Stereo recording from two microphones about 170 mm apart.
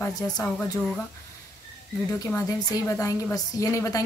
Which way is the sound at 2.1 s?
15° left (ahead or behind).